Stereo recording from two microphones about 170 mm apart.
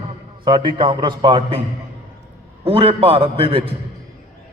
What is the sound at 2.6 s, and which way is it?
A man's voice, 35° right (ahead or behind).